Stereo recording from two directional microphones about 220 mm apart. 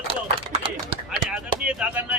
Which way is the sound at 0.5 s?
25° right (ahead or behind).